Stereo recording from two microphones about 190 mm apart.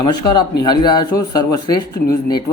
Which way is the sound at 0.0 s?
20° left (ahead or behind).